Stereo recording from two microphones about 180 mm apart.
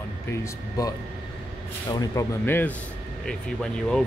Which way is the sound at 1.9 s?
20° left (ahead or behind).